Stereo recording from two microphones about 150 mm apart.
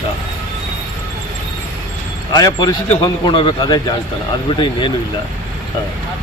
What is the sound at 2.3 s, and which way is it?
Speech, 25° left (ahead or behind).